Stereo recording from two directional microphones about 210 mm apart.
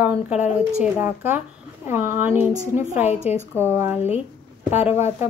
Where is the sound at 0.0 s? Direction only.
5° right (ahead or behind).